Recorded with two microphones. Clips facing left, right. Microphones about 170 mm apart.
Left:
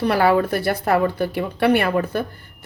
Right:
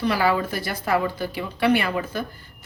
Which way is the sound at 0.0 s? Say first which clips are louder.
Left 5 dB; 55° left (ahead or behind).